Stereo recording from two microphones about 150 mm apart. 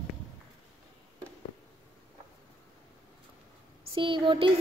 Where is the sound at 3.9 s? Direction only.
35° right (ahead or behind).